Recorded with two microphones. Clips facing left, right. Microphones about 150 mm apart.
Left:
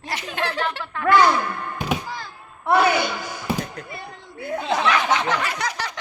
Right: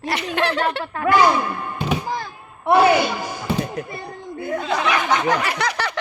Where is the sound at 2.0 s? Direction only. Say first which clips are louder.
Right 7 dB; 50° right (ahead or behind).